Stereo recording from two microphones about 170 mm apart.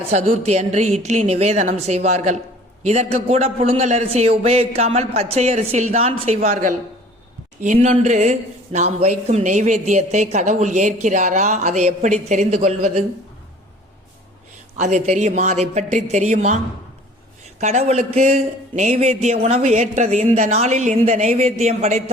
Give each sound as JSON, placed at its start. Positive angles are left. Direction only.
{"t": 0.1, "sound": "speech", "side_deg": -40}
{"t": 14.8, "sound": "speech", "side_deg": -45}
{"t": 17.6, "sound": "speech", "side_deg": -40}